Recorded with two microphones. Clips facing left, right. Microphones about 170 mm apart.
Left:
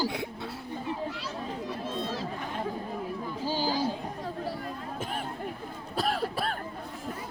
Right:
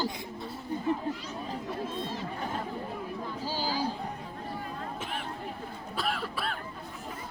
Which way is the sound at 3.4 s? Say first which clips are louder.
Left 5 dB; 15° left (ahead or behind).